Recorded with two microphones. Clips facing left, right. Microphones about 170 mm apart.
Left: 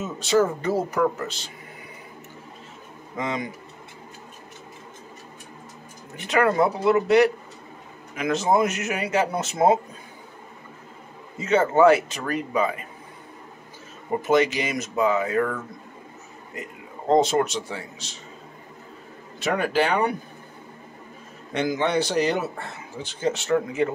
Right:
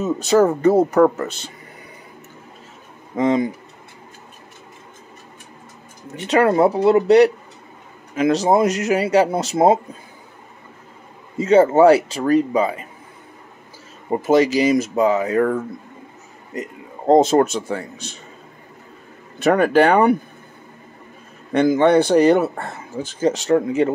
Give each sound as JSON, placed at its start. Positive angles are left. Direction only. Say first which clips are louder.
{"t": 0.0, "sound": "speech", "louder": "right 6 dB", "side_deg": -45}
{"t": 3.2, "sound": "speech", "louder": "right 11 dB", "side_deg": -35}
{"t": 6.1, "sound": "speech", "louder": "right 5 dB", "side_deg": -35}
{"t": 11.3, "sound": "speech", "louder": "right 7 dB", "side_deg": -35}
{"t": 14.2, "sound": "speech", "louder": "right 6 dB", "side_deg": -35}
{"t": 17.1, "sound": "speech", "louder": "right 6 dB", "side_deg": -50}
{"t": 19.4, "sound": "speech", "louder": "right 9 dB", "side_deg": -55}
{"t": 21.5, "sound": "speech", "louder": "right 9 dB", "side_deg": -55}